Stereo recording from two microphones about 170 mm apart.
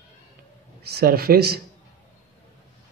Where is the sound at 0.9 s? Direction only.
65° right (ahead or behind).